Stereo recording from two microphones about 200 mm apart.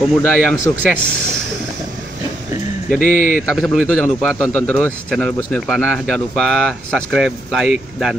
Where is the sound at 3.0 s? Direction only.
40° left (ahead or behind).